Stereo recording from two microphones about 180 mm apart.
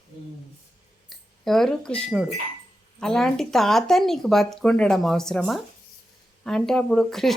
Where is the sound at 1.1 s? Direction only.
Centre (ahead or behind).